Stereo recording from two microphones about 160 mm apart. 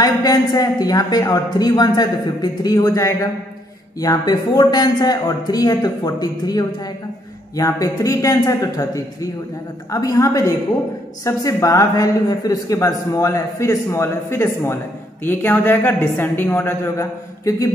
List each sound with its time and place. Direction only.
0.0 s a woman's voice: 25° left (ahead or behind)